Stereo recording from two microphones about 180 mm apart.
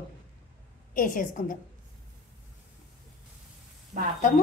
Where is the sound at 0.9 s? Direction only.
50° left (ahead or behind).